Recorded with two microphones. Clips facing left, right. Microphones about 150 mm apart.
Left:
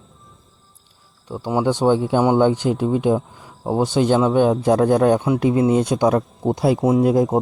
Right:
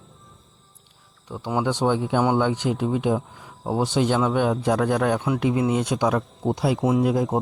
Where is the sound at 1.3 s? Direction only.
30° left (ahead or behind).